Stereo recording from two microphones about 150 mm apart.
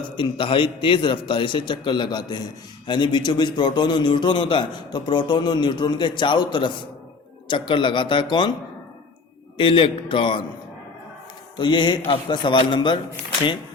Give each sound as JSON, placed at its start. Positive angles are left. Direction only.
{"t": 0.0, "sound": "a man's voice", "side_deg": 35}
{"t": 9.6, "sound": "a man's voice", "side_deg": 35}
{"t": 11.5, "sound": "a man's voice", "side_deg": 30}